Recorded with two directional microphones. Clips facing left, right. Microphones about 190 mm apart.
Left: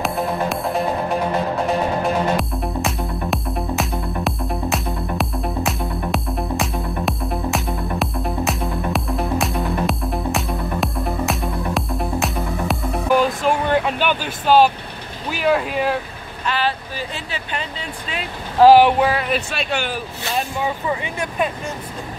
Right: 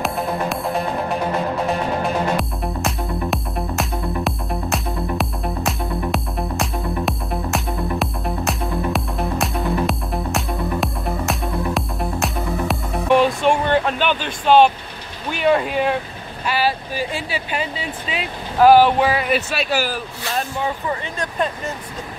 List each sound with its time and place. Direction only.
0.0 s music: centre (ahead or behind)
2.3 s music: centre (ahead or behind)
15.2 s speech: centre (ahead or behind)
16.4 s speech: 10° right (ahead or behind)
18.6 s speech: 25° left (ahead or behind)
18.9 s speech: 5° right (ahead or behind)
20.3 s speech: 10° left (ahead or behind)